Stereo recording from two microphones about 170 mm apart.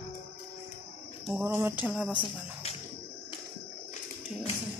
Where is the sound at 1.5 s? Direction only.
10° right (ahead or behind).